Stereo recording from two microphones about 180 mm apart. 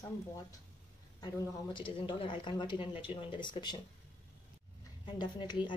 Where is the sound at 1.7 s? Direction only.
30° left (ahead or behind).